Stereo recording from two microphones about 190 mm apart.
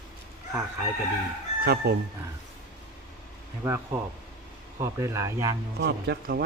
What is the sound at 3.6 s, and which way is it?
Speech, 10° right (ahead or behind).